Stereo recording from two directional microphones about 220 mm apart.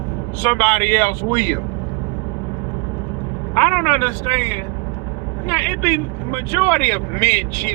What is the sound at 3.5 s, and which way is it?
A man's voice, 5° left (ahead or behind).